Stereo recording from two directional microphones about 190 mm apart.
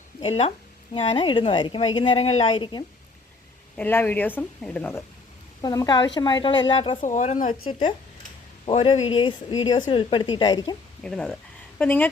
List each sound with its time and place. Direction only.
0.2 s a woman's voice: 30° left (ahead or behind)
3.8 s a woman's voice: 10° left (ahead or behind); by 7.0 s 30° left (ahead or behind)
7.0 s a woman's voice: 40° left (ahead or behind); by 10.8 s 20° left (ahead or behind)
11.0 s a woman's voice: 5° left (ahead or behind)